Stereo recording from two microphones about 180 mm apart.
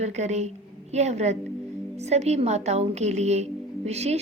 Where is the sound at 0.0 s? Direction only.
40° right (ahead or behind).